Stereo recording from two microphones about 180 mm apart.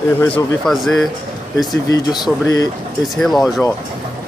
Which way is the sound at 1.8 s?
20° left (ahead or behind).